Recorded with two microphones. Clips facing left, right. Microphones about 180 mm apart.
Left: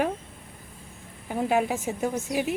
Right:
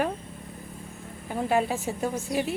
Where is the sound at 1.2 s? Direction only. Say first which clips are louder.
Left 1 dB; 10° left (ahead or behind).